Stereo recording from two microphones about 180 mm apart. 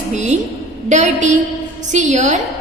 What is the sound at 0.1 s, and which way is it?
A woman's voice, 40° right (ahead or behind).